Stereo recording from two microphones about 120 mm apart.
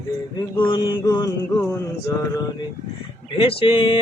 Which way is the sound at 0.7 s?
35° left (ahead or behind).